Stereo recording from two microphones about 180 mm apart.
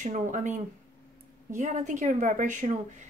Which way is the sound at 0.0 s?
45° right (ahead or behind).